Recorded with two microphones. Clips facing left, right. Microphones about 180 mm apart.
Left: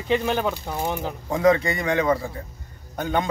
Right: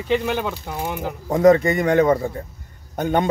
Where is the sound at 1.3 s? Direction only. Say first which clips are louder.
Right 5 dB; 45° right (ahead or behind).